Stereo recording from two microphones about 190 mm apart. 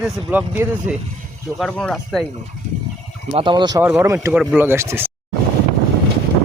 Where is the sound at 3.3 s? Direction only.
25° right (ahead or behind).